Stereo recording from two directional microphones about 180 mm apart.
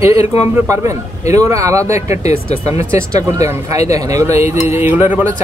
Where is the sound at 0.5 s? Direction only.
15° right (ahead or behind).